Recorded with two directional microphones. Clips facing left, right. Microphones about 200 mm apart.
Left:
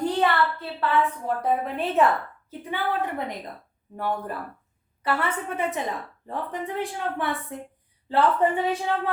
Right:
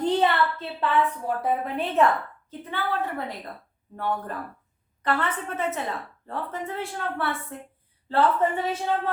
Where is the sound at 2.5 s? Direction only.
15° left (ahead or behind).